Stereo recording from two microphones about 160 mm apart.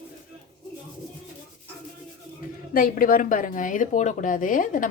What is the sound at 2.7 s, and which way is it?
A woman's voice, 60° left (ahead or behind).